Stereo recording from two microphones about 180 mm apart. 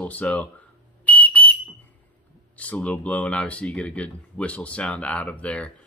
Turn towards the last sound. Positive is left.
turn(degrees=5)  # may be behind; listen again after turning